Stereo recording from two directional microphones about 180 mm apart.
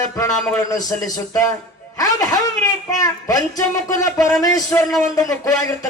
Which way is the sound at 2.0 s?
20° left (ahead or behind).